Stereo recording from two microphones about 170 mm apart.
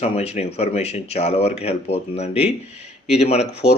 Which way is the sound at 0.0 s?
35° left (ahead or behind).